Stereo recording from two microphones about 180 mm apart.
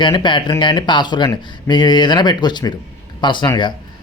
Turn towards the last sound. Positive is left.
turn(degrees=25)  # may be behind; listen again after turning